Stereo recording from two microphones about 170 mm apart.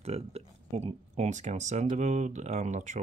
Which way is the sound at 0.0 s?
40° right (ahead or behind).